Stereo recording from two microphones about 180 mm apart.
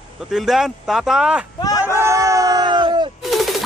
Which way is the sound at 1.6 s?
20° left (ahead or behind).